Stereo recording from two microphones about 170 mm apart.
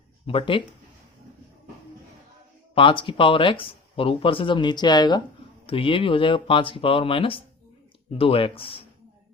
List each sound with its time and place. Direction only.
0.3 s speech: 30° left (ahead or behind)
2.7 s speech: 30° left (ahead or behind)